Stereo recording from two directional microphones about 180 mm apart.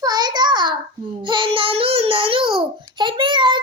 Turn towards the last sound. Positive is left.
turn(degrees=-25)  # may be behind; listen again after turning